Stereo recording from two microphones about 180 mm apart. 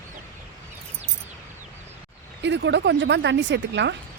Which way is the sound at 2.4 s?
75° right (ahead or behind).